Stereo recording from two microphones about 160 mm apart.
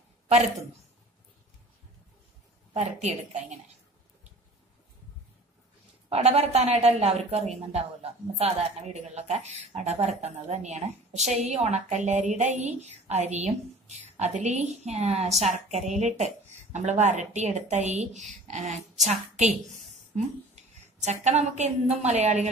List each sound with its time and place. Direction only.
2.7 s speech: 45° right (ahead or behind)
6.0 s a woman's voice: 40° right (ahead or behind)
20.5 s a woman's voice: 45° right (ahead or behind)